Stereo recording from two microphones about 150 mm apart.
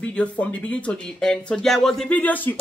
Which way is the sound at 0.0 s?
10° left (ahead or behind).